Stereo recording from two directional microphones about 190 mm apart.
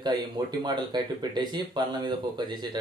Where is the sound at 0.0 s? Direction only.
20° right (ahead or behind).